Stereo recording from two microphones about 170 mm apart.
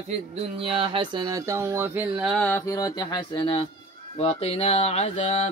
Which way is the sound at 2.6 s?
20° left (ahead or behind).